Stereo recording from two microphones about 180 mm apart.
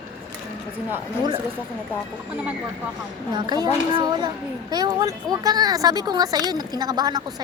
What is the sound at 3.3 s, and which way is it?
A child's voice, 25° right (ahead or behind).